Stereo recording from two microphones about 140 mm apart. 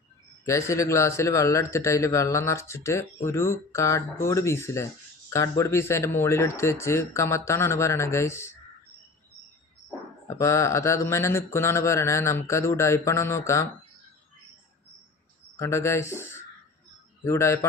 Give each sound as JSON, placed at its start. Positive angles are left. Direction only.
{"t": 0.4, "sound": "speech", "side_deg": 20}
{"t": 10.2, "sound": "speech", "side_deg": 20}
{"t": 15.5, "sound": "speech", "side_deg": 20}